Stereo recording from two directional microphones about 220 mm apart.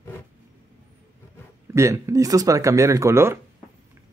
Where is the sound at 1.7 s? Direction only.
15° right (ahead or behind).